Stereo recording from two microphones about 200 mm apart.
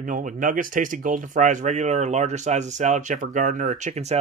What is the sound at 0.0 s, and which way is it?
Speech, 40° right (ahead or behind).